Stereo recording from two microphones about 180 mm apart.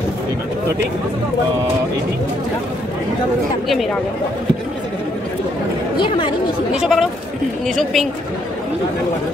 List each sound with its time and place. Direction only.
5.9 s speech: 25° left (ahead or behind)
6.7 s speech: centre (ahead or behind)